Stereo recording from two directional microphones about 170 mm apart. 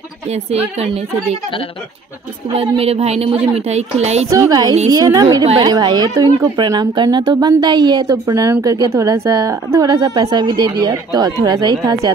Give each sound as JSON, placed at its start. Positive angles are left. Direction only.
{"t": 0.7, "sound": "a woman's voice", "side_deg": -35}
{"t": 2.5, "sound": "a woman's voice", "side_deg": -35}
{"t": 4.3, "sound": "a woman's voice", "side_deg": -20}